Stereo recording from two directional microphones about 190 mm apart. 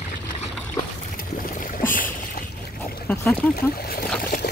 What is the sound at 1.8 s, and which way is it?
Boat, 45° left (ahead or behind).